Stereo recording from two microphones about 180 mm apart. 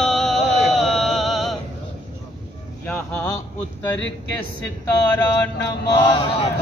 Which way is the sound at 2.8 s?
10° left (ahead or behind).